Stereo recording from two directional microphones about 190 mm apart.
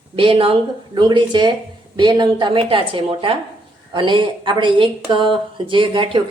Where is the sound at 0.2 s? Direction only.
30° right (ahead or behind).